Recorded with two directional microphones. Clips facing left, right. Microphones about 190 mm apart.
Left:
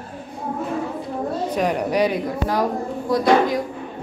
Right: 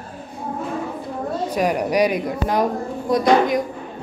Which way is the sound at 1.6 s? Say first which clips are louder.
Right 2 dB; 10° right (ahead or behind).